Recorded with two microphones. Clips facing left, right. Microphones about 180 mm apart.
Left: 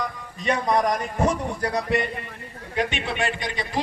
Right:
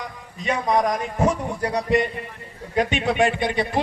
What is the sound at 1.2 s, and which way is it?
Speech, 10° right (ahead or behind).